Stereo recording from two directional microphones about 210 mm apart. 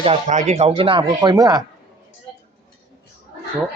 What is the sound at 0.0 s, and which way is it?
Speech, 30° right (ahead or behind).